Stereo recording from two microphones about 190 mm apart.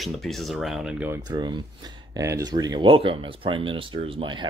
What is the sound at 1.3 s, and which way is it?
Speech, 25° right (ahead or behind).